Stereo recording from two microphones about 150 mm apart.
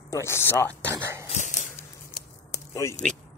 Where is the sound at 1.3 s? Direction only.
50° left (ahead or behind).